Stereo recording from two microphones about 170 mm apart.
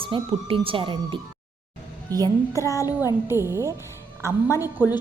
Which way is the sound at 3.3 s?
15° right (ahead or behind).